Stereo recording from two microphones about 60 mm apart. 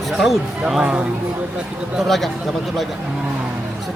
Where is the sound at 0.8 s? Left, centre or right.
Right.